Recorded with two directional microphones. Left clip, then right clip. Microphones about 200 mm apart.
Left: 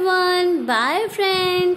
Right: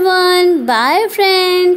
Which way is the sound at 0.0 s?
25° right (ahead or behind).